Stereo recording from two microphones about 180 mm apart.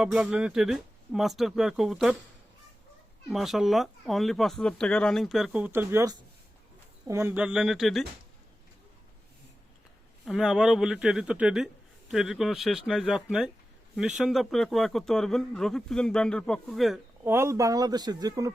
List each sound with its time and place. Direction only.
0.0 s speech: centre (ahead or behind)
3.2 s speech: centre (ahead or behind)
10.2 s speech: centre (ahead or behind)
17.2 s speech: 15° right (ahead or behind)